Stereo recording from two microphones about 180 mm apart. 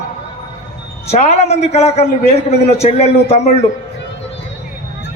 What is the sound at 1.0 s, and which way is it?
A woman's voice, 35° left (ahead or behind).